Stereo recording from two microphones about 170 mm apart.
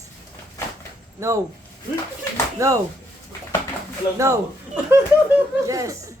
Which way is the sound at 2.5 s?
20° right (ahead or behind).